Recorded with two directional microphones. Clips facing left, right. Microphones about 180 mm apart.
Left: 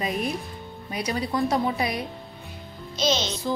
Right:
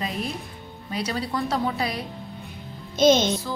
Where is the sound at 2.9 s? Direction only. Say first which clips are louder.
Right 7 dB; 50° right (ahead or behind).